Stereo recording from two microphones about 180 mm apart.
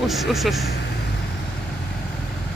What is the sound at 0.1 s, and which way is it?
Speech, centre (ahead or behind).